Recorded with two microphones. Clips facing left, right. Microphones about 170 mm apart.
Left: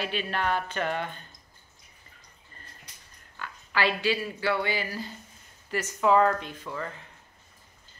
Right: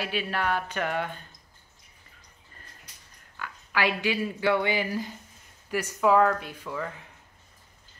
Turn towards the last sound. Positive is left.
turn(degrees=-10)  # may be behind; listen again after turning